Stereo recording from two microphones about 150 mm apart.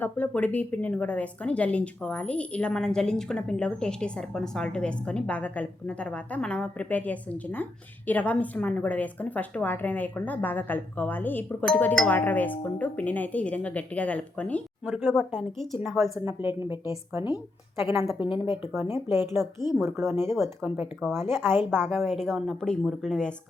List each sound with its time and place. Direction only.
0.0 s a woman's voice: 10° left (ahead or behind)
14.8 s a woman's voice: 10° right (ahead or behind)
16.1 s a woman's voice: 15° right (ahead or behind)
17.7 s a woman's voice: 15° right (ahead or behind)
20.3 s speech: centre (ahead or behind)
21.2 s a woman's voice: 15° right (ahead or behind)
22.1 s speech: centre (ahead or behind)